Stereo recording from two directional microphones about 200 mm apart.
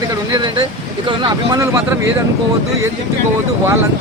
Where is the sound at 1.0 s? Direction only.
20° right (ahead or behind).